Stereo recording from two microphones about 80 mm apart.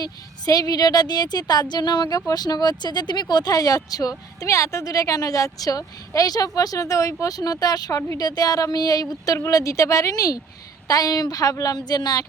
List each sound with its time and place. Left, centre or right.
0.0 s a woman's voice: left
2.0 s speech: left